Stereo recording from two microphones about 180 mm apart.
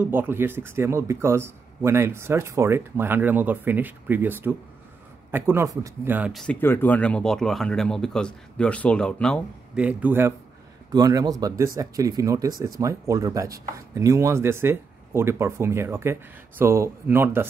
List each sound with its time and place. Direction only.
0.0 s speech: 10° right (ahead or behind)
6.3 s speech: 5° left (ahead or behind)
9.8 s speech: 10° right (ahead or behind)